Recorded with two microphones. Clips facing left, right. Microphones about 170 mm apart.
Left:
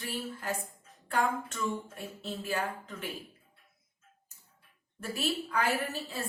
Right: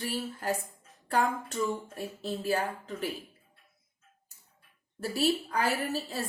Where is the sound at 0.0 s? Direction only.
35° right (ahead or behind).